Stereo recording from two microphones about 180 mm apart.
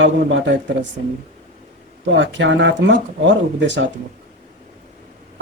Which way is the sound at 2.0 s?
85° right.